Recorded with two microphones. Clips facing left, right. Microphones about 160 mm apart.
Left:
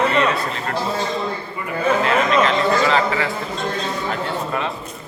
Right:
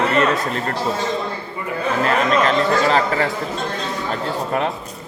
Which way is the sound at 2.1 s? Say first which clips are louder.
Right 3 dB; 40° right (ahead or behind).